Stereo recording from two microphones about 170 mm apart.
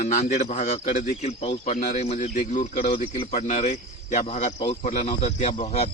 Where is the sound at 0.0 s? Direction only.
50° left (ahead or behind).